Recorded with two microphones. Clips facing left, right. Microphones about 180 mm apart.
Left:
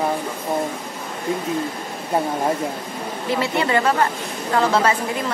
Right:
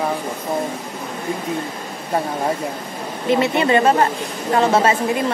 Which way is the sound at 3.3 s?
20° right (ahead or behind).